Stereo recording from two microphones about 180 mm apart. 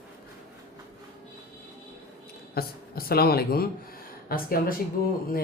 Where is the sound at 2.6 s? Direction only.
55° left (ahead or behind).